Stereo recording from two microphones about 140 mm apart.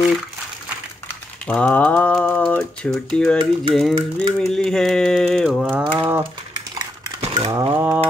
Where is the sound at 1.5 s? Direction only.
10° left (ahead or behind).